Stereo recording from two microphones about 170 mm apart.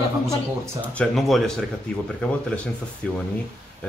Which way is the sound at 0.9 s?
Centre (ahead or behind).